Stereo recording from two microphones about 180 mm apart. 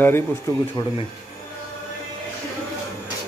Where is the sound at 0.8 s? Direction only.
25° left (ahead or behind).